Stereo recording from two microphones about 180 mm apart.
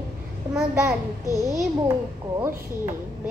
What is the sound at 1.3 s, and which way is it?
Speech, 15° right (ahead or behind).